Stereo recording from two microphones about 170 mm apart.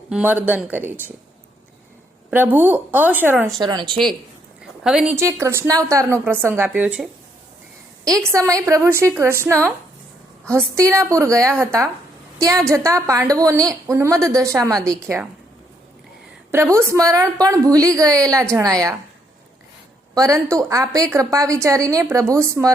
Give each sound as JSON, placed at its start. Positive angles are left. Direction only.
{"t": 0.1, "sound": "a woman's voice", "side_deg": -10}
{"t": 2.3, "sound": "a woman's voice", "side_deg": -10}
{"t": 3.6, "sound": "a woman's voice", "side_deg": -25}
{"t": 4.6, "sound": "speech", "side_deg": -5}
{"t": 5.1, "sound": "a woman's voice", "side_deg": -15}
{"t": 8.0, "sound": "a woman's voice", "side_deg": -20}
{"t": 14.8, "sound": "a woman's voice", "side_deg": 5}
{"t": 16.7, "sound": "a woman's voice", "side_deg": -20}
{"t": 20.1, "sound": "a woman's voice", "side_deg": -20}